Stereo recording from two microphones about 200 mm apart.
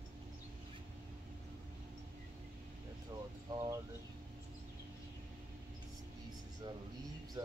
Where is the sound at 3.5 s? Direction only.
20° right (ahead or behind).